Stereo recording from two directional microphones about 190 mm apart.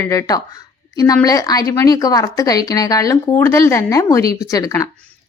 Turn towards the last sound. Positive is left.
turn(degrees=15)  # may be behind; listen again after turning